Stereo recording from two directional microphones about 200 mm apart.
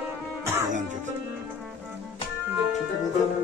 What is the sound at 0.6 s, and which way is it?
Music, 40° right (ahead or behind).